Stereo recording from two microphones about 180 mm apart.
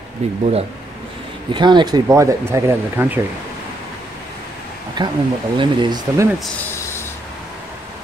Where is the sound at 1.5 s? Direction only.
25° right (ahead or behind).